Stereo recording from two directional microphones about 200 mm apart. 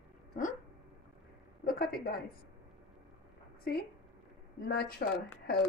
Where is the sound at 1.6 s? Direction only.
45° left (ahead or behind).